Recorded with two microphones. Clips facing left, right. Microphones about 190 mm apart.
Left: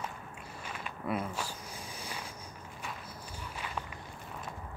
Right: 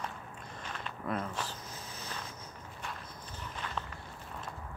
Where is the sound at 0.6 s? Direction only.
10° left (ahead or behind).